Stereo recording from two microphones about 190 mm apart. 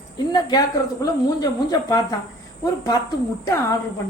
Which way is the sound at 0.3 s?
20° left (ahead or behind).